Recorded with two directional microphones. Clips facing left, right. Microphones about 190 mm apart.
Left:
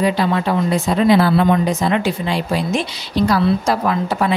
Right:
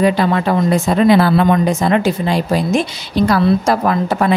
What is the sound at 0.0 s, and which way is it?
Speech, 50° right (ahead or behind).